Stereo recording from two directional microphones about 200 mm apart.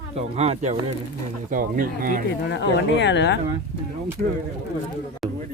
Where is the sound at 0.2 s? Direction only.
30° right (ahead or behind).